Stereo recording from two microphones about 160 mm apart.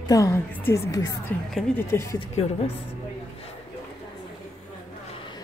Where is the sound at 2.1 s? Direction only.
40° left (ahead or behind).